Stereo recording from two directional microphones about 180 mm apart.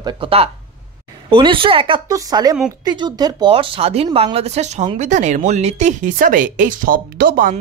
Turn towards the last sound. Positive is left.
turn(degrees=-50)  # may be behind; listen again after turning